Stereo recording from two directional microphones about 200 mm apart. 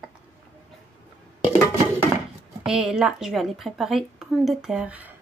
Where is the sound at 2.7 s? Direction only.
5° right (ahead or behind).